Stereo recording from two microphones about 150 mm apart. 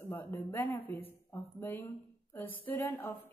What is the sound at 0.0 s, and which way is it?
A woman's voice, 10° left (ahead or behind).